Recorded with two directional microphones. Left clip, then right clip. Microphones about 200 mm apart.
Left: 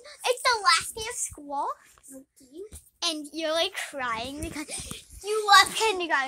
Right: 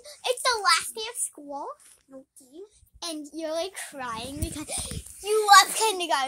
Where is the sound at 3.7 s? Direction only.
15° right (ahead or behind).